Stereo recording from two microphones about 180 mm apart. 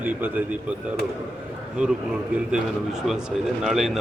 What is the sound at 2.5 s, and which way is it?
Speech, centre (ahead or behind).